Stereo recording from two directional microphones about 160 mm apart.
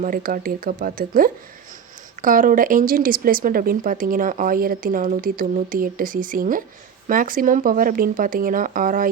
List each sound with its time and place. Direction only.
0.0 s speech: 65° right (ahead or behind)